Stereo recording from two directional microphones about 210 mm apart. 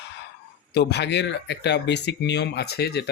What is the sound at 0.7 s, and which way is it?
Speech, 55° left (ahead or behind).